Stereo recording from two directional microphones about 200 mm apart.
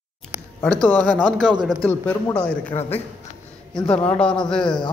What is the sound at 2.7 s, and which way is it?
Speech, 35° left (ahead or behind).